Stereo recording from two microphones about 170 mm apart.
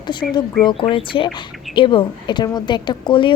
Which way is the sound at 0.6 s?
30° left (ahead or behind).